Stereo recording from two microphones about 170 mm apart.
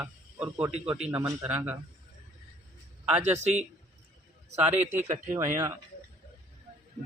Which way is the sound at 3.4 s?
40° right (ahead or behind).